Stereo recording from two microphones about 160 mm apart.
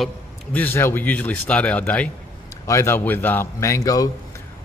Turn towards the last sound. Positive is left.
turn(degrees=20)  # may be behind; listen again after turning